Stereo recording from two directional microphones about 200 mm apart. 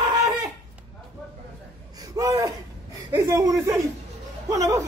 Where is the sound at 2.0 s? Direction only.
15° right (ahead or behind).